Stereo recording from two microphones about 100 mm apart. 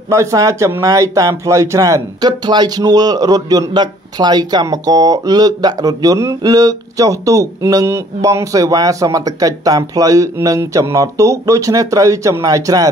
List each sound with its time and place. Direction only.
0.1 s speech: 30° right (ahead or behind)
2.4 s speech: 45° right (ahead or behind)